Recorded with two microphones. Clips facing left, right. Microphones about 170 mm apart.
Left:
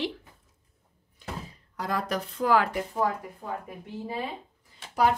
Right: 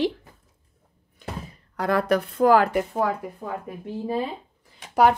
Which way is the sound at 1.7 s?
65° right (ahead or behind).